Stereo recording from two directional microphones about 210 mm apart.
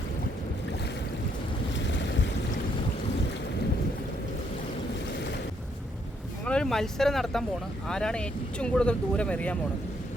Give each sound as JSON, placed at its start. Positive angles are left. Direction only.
{"t": 1.8, "sound": "boat", "side_deg": 60}
{"t": 6.4, "sound": "speech", "side_deg": 5}